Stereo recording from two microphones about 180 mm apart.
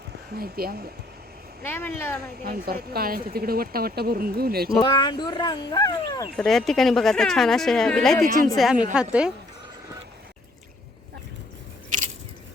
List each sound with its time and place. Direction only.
0.3 s speech: 55° right (ahead or behind)
1.6 s speech: 10° left (ahead or behind)
2.4 s speech: 60° right (ahead or behind)
4.8 s speech: 25° left (ahead or behind)
6.3 s speech: 5° left (ahead or behind)